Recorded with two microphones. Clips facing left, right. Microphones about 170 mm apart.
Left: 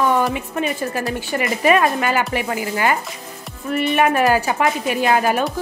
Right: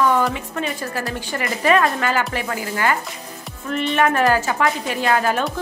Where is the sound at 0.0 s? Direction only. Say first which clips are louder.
Even; 20° left (ahead or behind).